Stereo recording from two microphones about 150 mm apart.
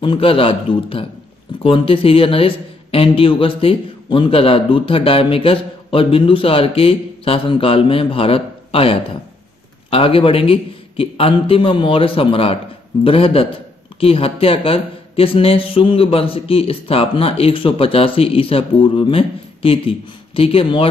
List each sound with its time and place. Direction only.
0.0 s speech: 35° left (ahead or behind)